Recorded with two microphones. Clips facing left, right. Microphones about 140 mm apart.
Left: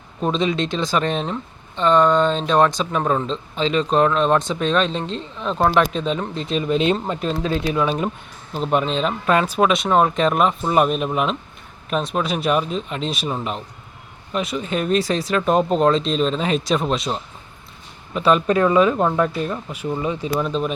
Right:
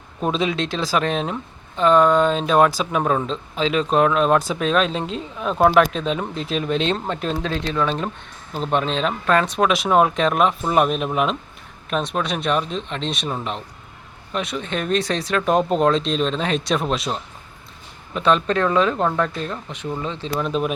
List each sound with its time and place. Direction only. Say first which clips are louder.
0.2 s speech: left 1 dB; 5° right (ahead or behind)
20.5 s speech: right 1 dB; 5° right (ahead or behind)